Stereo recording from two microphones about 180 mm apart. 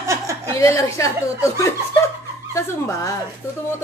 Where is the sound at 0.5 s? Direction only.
15° left (ahead or behind).